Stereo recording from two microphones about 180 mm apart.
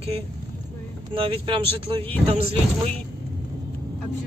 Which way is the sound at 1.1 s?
30° right (ahead or behind).